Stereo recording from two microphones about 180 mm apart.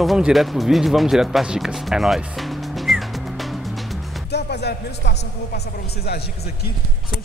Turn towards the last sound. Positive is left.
turn(degrees=65)  # may be behind; listen again after turning